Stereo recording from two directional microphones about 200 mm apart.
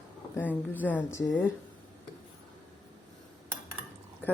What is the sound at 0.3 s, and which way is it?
A woman's voice, 10° left (ahead or behind).